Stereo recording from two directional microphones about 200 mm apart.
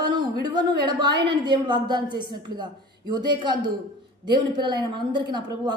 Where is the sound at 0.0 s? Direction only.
20° right (ahead or behind).